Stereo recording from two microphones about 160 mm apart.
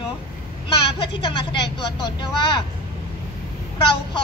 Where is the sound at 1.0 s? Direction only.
30° left (ahead or behind).